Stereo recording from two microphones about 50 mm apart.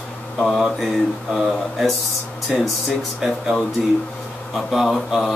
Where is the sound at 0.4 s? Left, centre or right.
Centre.